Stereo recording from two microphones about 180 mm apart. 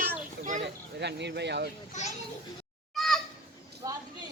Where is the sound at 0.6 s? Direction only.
70° right (ahead or behind).